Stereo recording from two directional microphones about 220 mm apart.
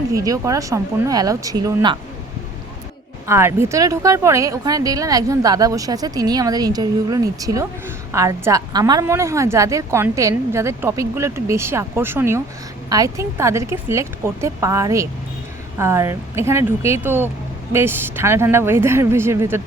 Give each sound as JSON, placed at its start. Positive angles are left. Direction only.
{"t": 0.1, "sound": "speech", "side_deg": -15}
{"t": 3.2, "sound": "speech", "side_deg": -10}